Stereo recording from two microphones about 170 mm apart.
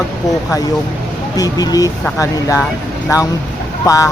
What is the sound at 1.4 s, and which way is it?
Speech, 20° left (ahead or behind).